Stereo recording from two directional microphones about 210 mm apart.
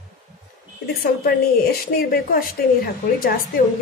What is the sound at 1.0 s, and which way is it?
A woman's voice, 45° left (ahead or behind).